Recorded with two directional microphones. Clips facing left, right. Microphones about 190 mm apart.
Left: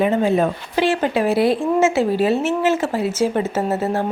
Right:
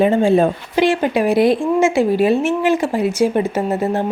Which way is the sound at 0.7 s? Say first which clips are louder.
Right 2 dB; 15° right (ahead or behind).